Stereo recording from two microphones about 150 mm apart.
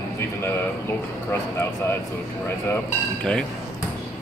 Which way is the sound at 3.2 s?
5° left (ahead or behind).